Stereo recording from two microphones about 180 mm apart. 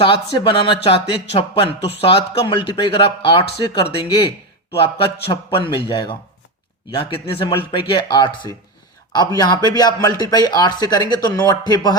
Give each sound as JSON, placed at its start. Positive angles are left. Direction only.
{"t": 0.0, "sound": "speech", "side_deg": 30}
{"t": 4.7, "sound": "speech", "side_deg": 30}